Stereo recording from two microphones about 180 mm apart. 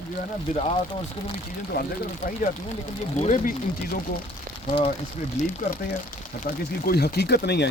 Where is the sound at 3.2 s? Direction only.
45° left (ahead or behind).